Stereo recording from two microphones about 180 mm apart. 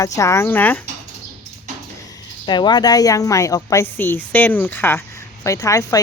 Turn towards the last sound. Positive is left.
turn(degrees=15)  # may be behind; listen again after turning